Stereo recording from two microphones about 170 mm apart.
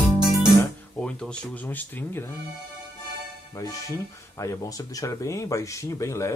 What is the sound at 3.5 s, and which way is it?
Speech, 20° left (ahead or behind).